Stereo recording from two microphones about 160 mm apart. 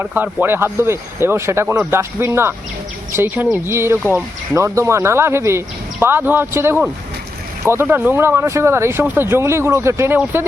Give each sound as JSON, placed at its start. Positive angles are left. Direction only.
{"t": 0.0, "sound": "speech", "side_deg": -10}